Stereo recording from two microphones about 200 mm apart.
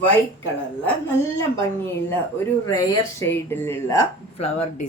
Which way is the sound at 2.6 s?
15° left (ahead or behind).